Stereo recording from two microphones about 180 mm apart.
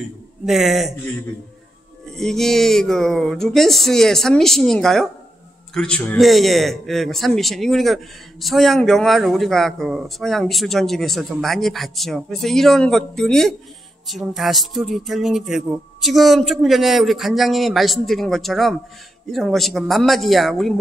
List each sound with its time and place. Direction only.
0.5 s a man's voice: centre (ahead or behind)
2.1 s a man's voice: centre (ahead or behind)